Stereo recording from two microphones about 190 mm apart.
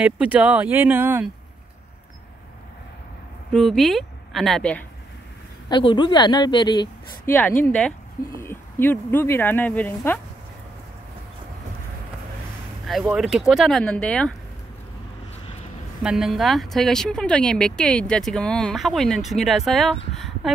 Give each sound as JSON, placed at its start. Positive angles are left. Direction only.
{"t": 0.0, "sound": "speech", "side_deg": -5}
{"t": 3.5, "sound": "speech", "side_deg": 0}
{"t": 5.7, "sound": "a woman's voice", "side_deg": 25}
{"t": 7.2, "sound": "speech", "side_deg": 10}
{"t": 12.8, "sound": "speech", "side_deg": 0}
{"t": 16.0, "sound": "speech", "side_deg": 0}
{"t": 20.2, "sound": "a sound", "side_deg": 0}